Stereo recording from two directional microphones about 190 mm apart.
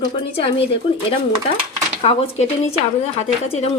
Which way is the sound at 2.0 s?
30° left (ahead or behind).